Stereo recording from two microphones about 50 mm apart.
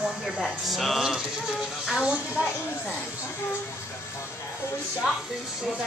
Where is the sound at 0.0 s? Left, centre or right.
Centre.